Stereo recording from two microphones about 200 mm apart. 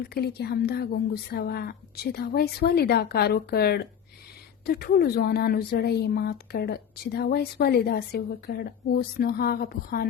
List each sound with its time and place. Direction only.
0.0 s speech: 55° left (ahead or behind)